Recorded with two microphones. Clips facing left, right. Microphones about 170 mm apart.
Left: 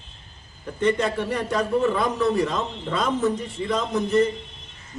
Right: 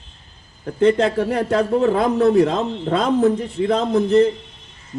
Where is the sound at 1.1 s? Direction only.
75° right (ahead or behind); by 4.2 s 60° right (ahead or behind).